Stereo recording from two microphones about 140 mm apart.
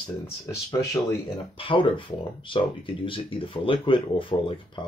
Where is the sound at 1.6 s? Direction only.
40° left (ahead or behind).